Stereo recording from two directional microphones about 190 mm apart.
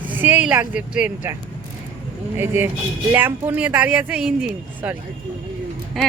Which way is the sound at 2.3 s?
10° right (ahead or behind).